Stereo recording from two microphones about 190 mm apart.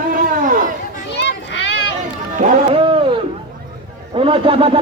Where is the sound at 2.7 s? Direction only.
30° right (ahead or behind).